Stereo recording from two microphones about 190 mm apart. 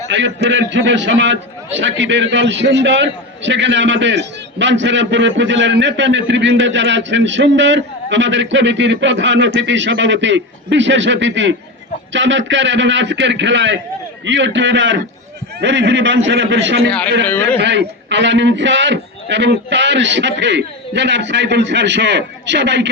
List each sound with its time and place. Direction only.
0.1 s a man's voice: 70° right (ahead or behind)
17.2 s a man's voice: 10° left (ahead or behind)
17.6 s a man's voice: 65° right (ahead or behind)